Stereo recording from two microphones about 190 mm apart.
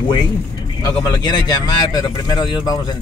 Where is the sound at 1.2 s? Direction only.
20° left (ahead or behind).